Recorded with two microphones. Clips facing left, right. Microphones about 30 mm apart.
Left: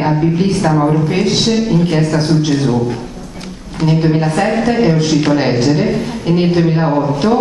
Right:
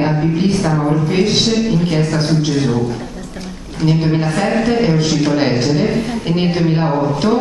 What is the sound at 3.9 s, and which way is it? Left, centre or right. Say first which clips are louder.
A woman's voice: left 2 dB; centre.